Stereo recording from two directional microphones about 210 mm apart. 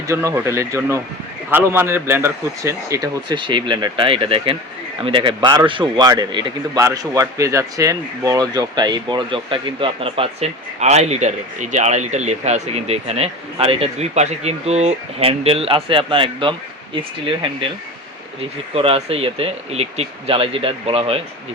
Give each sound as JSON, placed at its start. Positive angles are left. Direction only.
{"t": 0.1, "sound": "a man's voice", "side_deg": -15}
{"t": 18.7, "sound": "a man's voice", "side_deg": -30}